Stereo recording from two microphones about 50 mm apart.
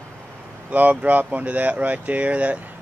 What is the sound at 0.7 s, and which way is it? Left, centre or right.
Speech, right.